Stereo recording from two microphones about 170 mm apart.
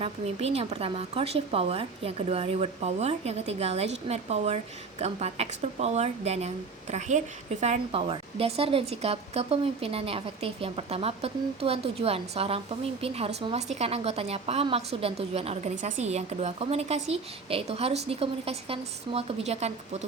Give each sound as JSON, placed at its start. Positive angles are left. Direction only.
{"t": 0.0, "sound": "speech", "side_deg": -40}
{"t": 7.6, "sound": "speech", "side_deg": -40}